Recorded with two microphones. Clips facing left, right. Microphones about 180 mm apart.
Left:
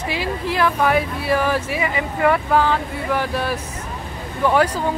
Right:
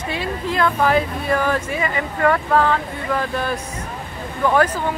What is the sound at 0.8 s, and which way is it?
Speech, 5° left (ahead or behind).